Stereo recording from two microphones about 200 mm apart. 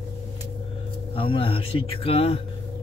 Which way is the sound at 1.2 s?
25° left (ahead or behind).